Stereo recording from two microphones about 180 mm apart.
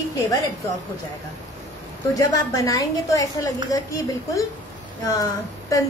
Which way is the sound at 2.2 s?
20° left (ahead or behind).